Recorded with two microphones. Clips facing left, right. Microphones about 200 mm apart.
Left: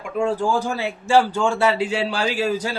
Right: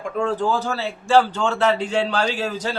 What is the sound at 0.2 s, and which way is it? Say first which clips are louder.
A man's voice: left 1 dB; 10° left (ahead or behind).